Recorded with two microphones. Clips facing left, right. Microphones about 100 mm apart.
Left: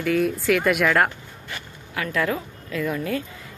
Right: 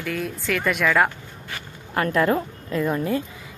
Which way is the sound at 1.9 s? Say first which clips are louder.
Right 4 dB; 45° right (ahead or behind).